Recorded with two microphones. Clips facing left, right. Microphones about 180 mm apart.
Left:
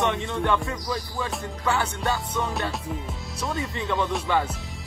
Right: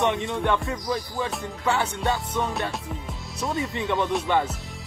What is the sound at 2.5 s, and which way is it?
Music, centre (ahead or behind).